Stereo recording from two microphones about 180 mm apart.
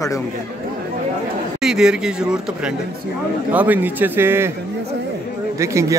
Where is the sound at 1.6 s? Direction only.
5° right (ahead or behind).